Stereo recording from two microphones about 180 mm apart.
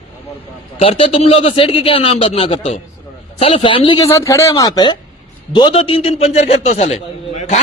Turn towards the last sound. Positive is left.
turn(degrees=35)  # may be behind; listen again after turning